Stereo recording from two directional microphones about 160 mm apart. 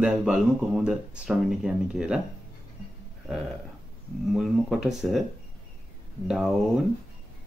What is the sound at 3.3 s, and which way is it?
Speech, centre (ahead or behind).